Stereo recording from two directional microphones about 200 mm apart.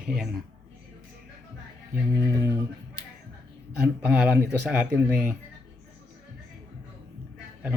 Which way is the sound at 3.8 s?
5° right (ahead or behind).